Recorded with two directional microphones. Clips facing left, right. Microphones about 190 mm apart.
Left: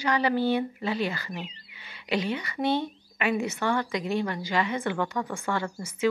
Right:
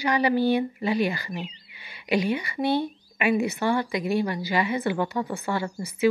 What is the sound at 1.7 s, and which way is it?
A woman's voice, 15° right (ahead or behind).